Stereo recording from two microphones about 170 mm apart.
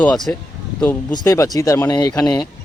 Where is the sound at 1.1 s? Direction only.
20° left (ahead or behind).